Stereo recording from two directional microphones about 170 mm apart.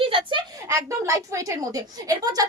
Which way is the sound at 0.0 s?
30° right (ahead or behind).